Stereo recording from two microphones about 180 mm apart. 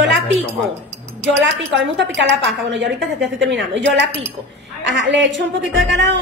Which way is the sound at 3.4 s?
85° right.